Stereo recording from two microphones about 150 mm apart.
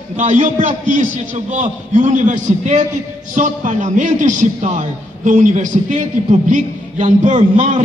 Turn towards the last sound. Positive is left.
turn(degrees=-55)  # may be behind; listen again after turning